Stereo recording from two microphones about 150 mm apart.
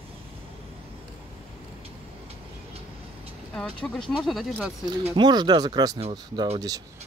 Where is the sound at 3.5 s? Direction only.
5° left (ahead or behind).